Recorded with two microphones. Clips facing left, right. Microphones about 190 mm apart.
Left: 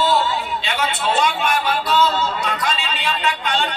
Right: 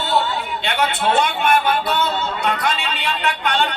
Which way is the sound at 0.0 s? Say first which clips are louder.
Left 2 dB; 60° right (ahead or behind).